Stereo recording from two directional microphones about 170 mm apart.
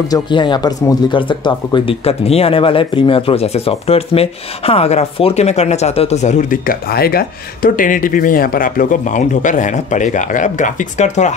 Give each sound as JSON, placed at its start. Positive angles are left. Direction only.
{"t": 0.1, "sound": "speech", "side_deg": 25}